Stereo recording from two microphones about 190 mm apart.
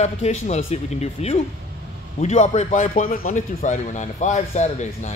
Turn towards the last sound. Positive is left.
turn(degrees=35)  # may be behind; listen again after turning